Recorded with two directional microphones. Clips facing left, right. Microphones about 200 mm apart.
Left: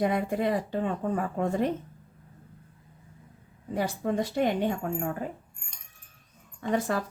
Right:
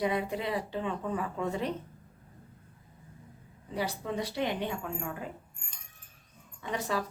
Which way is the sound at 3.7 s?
50° left (ahead or behind).